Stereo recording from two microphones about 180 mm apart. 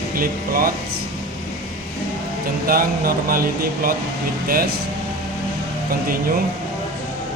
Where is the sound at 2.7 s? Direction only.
55° right (ahead or behind).